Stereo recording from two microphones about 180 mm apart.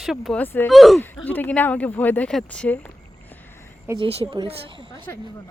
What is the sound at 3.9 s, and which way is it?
Speech, 30° right (ahead or behind).